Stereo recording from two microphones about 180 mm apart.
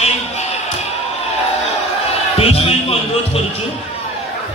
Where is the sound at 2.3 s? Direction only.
35° left (ahead or behind).